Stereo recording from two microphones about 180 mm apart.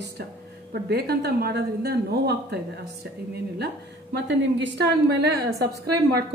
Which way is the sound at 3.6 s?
70° right (ahead or behind).